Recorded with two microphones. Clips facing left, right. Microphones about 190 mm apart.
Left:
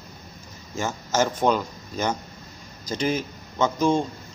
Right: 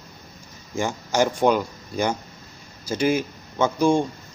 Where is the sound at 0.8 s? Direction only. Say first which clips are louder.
Right 2 dB; 15° right (ahead or behind).